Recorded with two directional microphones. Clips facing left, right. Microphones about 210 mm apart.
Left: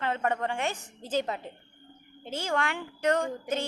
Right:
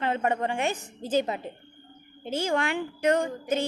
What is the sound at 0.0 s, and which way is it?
Child singing, 15° right (ahead or behind).